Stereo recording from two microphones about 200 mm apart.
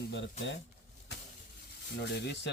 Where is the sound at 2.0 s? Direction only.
55° left (ahead or behind).